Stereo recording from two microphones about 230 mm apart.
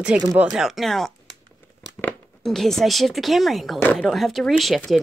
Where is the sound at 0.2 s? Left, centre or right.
Centre.